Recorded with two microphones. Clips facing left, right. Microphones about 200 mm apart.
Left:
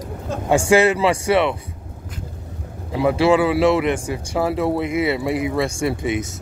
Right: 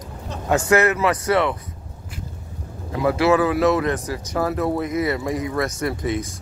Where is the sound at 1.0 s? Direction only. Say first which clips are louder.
Left 2 dB; 25° left (ahead or behind).